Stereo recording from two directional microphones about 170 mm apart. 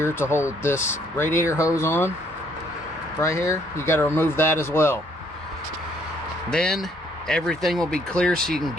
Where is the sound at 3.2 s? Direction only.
15° left (ahead or behind).